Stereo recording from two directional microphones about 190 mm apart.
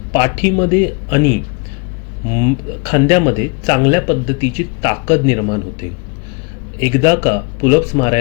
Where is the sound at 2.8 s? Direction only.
25° left (ahead or behind).